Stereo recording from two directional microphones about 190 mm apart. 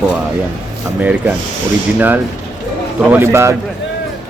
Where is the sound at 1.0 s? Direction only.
10° right (ahead or behind).